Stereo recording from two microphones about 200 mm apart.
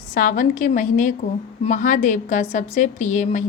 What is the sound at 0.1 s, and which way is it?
A woman's voice, 45° left (ahead or behind).